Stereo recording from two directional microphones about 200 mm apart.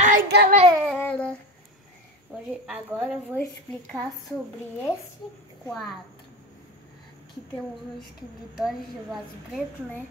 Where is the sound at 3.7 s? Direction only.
5° left (ahead or behind).